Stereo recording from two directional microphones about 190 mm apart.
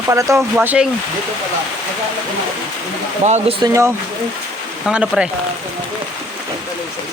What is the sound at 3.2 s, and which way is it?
Speech, 40° right (ahead or behind).